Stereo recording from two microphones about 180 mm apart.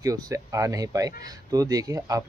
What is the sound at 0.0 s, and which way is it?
Speech, 20° right (ahead or behind).